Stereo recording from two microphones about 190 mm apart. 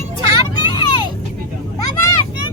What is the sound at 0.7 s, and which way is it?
Vehicle, 25° left (ahead or behind).